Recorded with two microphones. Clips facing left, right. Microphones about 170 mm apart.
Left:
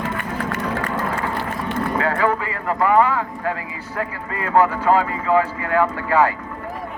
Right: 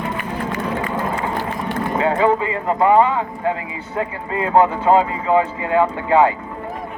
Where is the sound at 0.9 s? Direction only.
20° right (ahead or behind).